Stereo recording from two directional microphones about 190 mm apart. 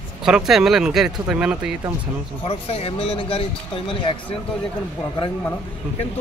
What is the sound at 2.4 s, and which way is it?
Speech, 30° left (ahead or behind).